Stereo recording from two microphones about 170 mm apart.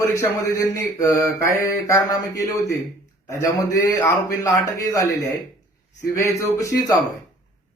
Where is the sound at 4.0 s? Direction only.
15° left (ahead or behind).